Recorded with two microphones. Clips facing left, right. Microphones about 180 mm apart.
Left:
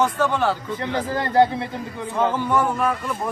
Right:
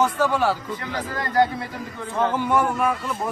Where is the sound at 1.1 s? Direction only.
30° left (ahead or behind).